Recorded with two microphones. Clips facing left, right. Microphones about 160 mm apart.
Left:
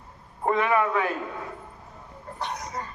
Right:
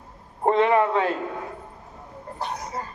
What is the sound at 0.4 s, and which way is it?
Speech, 30° right (ahead or behind).